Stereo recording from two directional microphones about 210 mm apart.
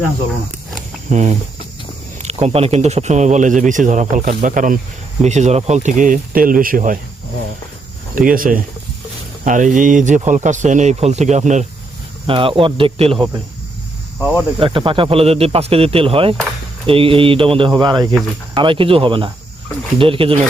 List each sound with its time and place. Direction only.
1.1 s speech: 35° right (ahead or behind)
8.1 s speech: 40° right (ahead or behind); by 13.4 s 20° right (ahead or behind)
14.2 s cricket: 5° right (ahead or behind)
14.6 s speech: 25° right (ahead or behind)